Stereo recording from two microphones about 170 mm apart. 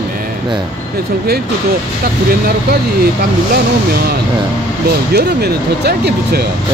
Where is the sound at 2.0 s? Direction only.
60° right (ahead or behind).